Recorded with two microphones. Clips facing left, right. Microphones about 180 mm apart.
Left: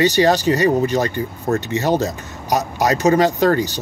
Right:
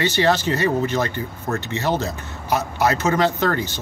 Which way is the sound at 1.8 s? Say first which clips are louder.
Left 3 dB; 40° left (ahead or behind).